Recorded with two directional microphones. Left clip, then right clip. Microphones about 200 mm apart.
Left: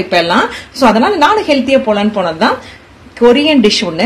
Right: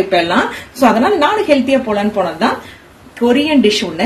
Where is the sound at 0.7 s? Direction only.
40° left (ahead or behind).